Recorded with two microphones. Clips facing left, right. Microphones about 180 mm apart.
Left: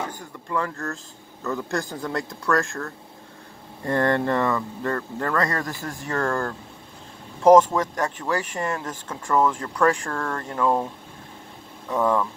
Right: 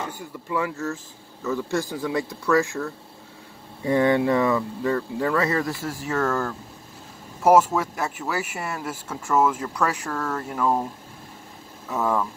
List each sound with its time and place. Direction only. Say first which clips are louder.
0.1 s speech: even; 10° right (ahead or behind)
11.9 s speech: left 2 dB; 5° right (ahead or behind)